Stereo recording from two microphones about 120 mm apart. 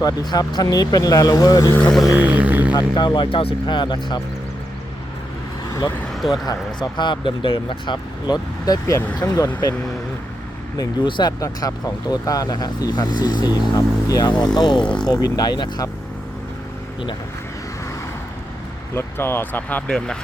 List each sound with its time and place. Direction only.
0.0 s speech: 35° left (ahead or behind)
1.9 s music: centre (ahead or behind)
2.1 s music: 10° right (ahead or behind)
2.7 s speech: 40° left (ahead or behind)
6.3 s speech: 35° left (ahead or behind)
10.8 s speech: 35° left (ahead or behind)
14.8 s speech: 5° left (ahead or behind)
15.1 s speech: 35° left (ahead or behind)
18.9 s speech: 20° left (ahead or behind)